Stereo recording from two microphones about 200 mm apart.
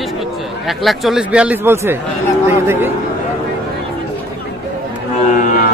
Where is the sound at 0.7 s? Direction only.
Centre (ahead or behind).